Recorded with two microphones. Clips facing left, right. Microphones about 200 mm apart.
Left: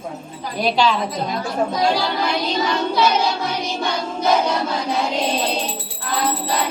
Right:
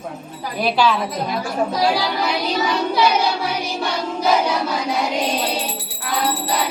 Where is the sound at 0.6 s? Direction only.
5° right (ahead or behind).